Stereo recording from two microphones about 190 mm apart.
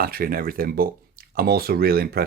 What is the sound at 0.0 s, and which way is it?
Speech, 50° right (ahead or behind).